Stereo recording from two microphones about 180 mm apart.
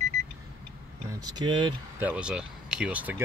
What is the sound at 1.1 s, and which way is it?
Speech, 20° right (ahead or behind).